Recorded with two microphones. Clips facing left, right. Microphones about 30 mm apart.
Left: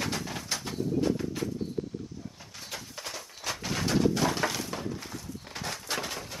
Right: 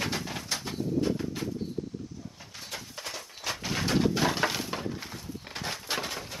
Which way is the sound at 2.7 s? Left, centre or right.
Centre.